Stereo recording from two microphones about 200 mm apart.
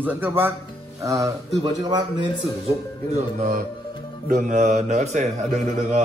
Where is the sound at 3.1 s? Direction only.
30° right (ahead or behind).